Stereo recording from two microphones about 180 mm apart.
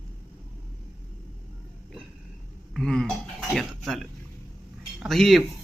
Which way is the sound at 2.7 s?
5° left (ahead or behind).